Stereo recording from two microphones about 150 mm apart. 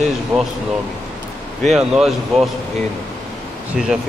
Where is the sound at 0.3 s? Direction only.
15° right (ahead or behind).